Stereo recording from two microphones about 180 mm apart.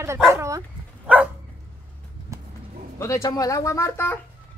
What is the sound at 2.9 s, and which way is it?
Speech, 15° left (ahead or behind).